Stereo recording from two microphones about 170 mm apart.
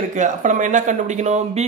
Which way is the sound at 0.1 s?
45° right (ahead or behind).